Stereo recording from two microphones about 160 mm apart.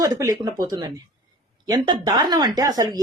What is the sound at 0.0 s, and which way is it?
Speech, 20° right (ahead or behind).